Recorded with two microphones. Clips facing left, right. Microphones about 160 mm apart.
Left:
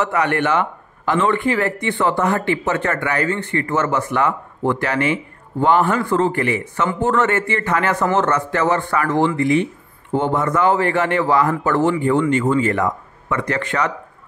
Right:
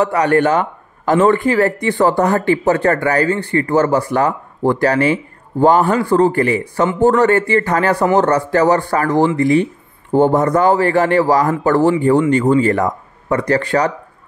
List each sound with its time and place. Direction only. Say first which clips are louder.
0.0 s a man's voice: right 5 dB; 35° right (ahead or behind)